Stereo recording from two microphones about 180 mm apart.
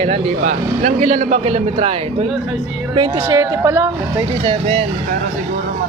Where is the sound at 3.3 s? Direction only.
15° right (ahead or behind).